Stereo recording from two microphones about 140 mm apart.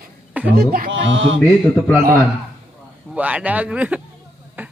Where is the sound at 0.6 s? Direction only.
90° right.